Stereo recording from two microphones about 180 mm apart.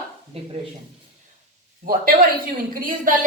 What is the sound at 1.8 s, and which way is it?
A woman's voice, 55° right (ahead or behind).